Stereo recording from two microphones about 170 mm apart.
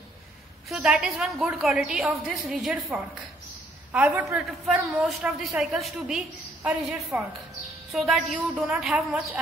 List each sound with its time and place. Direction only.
0.7 s a woman's voice: 5° right (ahead or behind)